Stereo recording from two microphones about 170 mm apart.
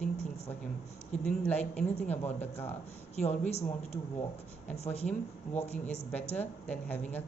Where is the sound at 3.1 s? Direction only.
40° left (ahead or behind).